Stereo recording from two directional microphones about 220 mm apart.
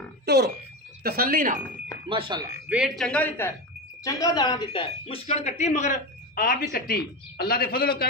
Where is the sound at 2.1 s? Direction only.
20° right (ahead or behind).